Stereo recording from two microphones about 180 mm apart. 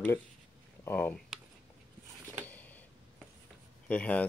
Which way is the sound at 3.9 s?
10° left (ahead or behind).